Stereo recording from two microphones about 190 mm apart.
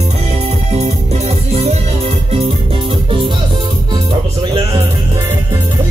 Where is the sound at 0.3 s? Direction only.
35° right (ahead or behind).